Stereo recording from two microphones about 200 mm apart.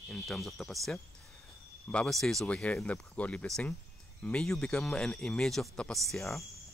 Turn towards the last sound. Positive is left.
turn(degrees=0)  # may be behind; listen again after turning